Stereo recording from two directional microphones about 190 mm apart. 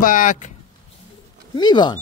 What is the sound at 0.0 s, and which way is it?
Speech, 45° left (ahead or behind).